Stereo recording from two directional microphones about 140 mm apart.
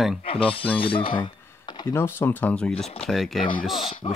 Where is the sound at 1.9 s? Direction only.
15° left (ahead or behind); by 3.4 s centre (ahead or behind).